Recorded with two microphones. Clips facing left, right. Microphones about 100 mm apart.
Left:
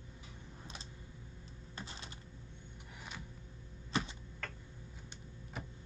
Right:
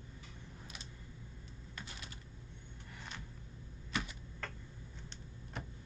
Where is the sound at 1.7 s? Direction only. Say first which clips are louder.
Left 2 dB; 30° left (ahead or behind).